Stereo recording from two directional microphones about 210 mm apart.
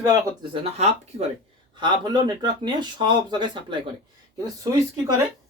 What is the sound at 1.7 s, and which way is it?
Speech, 20° right (ahead or behind).